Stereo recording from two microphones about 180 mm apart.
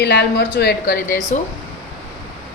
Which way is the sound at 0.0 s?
65° left (ahead or behind).